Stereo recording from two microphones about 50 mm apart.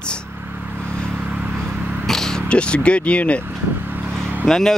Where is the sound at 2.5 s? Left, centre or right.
Left.